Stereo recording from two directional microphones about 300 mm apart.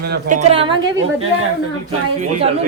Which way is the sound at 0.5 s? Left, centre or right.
Centre.